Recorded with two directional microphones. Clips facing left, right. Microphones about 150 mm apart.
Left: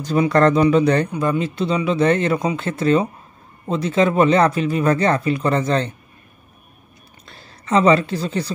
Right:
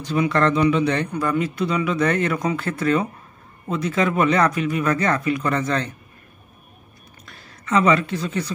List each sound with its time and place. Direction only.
0.0 s speech: 40° left (ahead or behind)
1.1 s speech: 20° left (ahead or behind)
7.2 s a woman's voice: 30° left (ahead or behind)